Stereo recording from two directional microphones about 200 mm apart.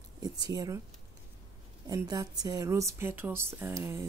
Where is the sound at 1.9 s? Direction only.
15° right (ahead or behind).